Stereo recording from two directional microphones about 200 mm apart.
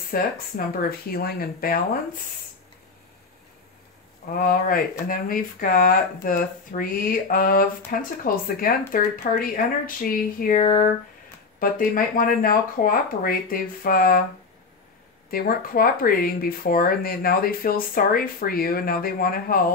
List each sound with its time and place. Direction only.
0.1 s speech: 45° left (ahead or behind)
4.4 s speech: 45° left (ahead or behind)
15.3 s speech: 45° left (ahead or behind)